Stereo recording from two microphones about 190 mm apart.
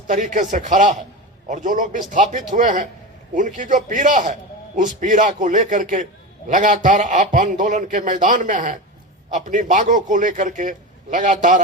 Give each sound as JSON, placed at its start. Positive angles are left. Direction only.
{"t": 0.1, "sound": "a man's voice", "side_deg": -40}